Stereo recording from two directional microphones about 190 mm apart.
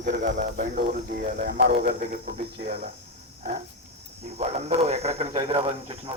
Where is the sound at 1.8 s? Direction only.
35° right (ahead or behind).